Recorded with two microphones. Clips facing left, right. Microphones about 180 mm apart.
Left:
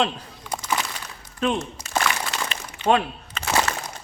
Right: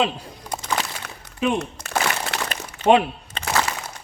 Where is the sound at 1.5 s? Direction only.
60° right (ahead or behind).